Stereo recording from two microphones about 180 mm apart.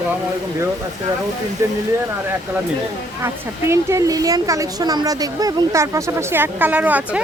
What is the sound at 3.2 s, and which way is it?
Speech, 15° right (ahead or behind).